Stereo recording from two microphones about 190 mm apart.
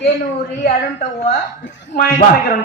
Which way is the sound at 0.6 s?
45° left (ahead or behind).